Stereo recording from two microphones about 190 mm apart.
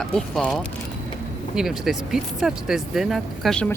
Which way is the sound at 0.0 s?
Centre (ahead or behind).